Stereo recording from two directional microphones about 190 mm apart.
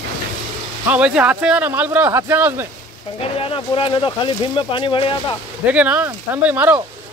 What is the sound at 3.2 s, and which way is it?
Speech, 30° left (ahead or behind).